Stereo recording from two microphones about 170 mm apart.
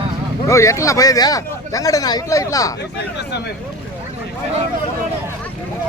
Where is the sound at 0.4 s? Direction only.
20° left (ahead or behind).